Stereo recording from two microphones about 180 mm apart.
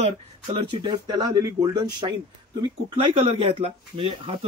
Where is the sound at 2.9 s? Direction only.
30° right (ahead or behind).